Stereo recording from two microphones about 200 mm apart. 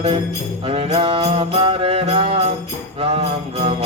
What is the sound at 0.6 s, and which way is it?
Music, 30° right (ahead or behind).